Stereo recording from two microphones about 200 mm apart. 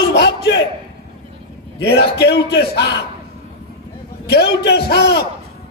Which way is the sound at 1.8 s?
55° left (ahead or behind).